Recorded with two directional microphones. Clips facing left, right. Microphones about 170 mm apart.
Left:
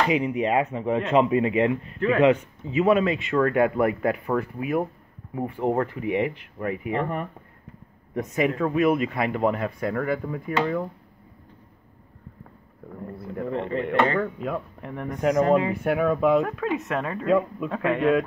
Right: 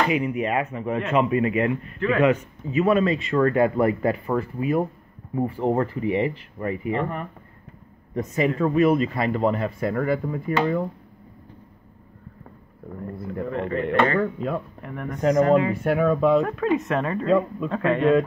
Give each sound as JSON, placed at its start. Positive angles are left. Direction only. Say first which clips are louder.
{"t": 0.1, "sound": "speech", "louder": "left 1 dB", "side_deg": 20}
{"t": 2.7, "sound": "speech", "louder": "even", "side_deg": 15}
{"t": 8.2, "sound": "speech", "louder": "right 1 dB", "side_deg": 5}
{"t": 13.5, "sound": "speech", "louder": "right 1 dB", "side_deg": 25}
{"t": 15.0, "sound": "speech", "louder": "right 2 dB", "side_deg": 5}
{"t": 15.4, "sound": "speech", "louder": "right 2 dB", "side_deg": 25}
{"t": 15.7, "sound": "speech", "louder": "right 2 dB", "side_deg": 0}